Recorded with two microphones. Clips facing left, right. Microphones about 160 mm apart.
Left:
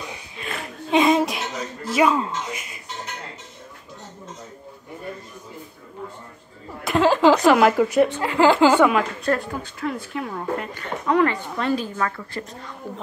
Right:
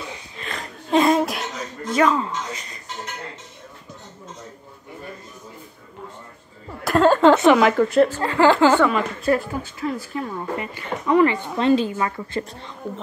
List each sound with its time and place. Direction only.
0.5 s a sound: 5° left (ahead or behind)
6.8 s chuckle: centre (ahead or behind)
8.2 s a woman's voice: 15° left (ahead or behind)
9.2 s a woman's voice: 5° right (ahead or behind); by 12.7 s 25° right (ahead or behind)